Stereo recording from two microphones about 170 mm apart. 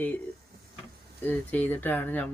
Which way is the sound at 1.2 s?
10° left (ahead or behind).